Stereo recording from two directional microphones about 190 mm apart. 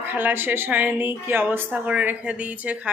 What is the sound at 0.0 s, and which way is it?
A woman's voice, 10° right (ahead or behind).